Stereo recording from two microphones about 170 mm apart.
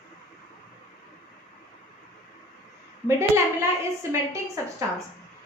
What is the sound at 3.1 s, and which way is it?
Speech, 15° right (ahead or behind).